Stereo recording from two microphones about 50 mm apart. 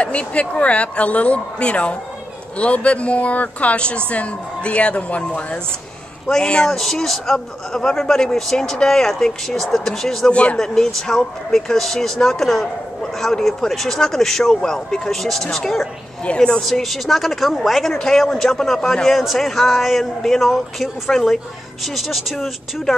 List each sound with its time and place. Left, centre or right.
0.0 s a man's voice: left
6.7 s a man's voice: centre
10.3 s speech: left
10.6 s a man's voice: centre
16.3 s a man's voice: centre
16.6 s a man's voice: centre
21.1 s a man's voice: centre
21.8 s a man's voice: centre